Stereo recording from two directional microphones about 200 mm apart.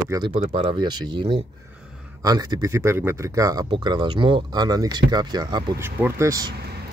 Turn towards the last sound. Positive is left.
turn(degrees=-15)  # may be behind; listen again after turning